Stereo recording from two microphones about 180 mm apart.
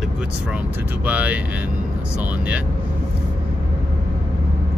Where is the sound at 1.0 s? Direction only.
10° right (ahead or behind).